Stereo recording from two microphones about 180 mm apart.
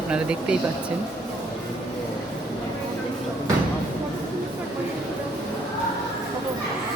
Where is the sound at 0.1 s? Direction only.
5° right (ahead or behind).